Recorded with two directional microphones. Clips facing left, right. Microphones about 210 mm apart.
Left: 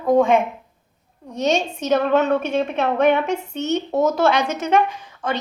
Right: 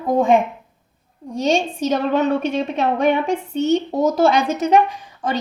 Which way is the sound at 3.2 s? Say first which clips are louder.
Right 4 dB; 30° right (ahead or behind).